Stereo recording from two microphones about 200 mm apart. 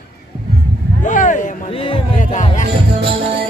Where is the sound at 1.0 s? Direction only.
40° left (ahead or behind).